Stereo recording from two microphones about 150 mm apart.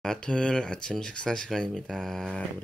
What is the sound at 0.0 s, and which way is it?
Speech, 5° left (ahead or behind).